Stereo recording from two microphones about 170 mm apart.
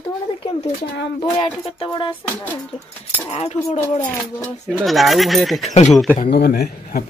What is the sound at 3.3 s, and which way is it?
Music, 40° left (ahead or behind).